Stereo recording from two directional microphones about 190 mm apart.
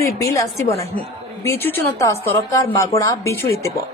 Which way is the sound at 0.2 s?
15° left (ahead or behind).